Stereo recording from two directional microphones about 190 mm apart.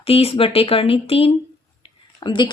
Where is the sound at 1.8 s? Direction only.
25° left (ahead or behind).